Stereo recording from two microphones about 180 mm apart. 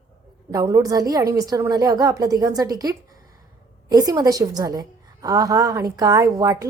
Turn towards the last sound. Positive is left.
turn(degrees=-20)  # may be behind; listen again after turning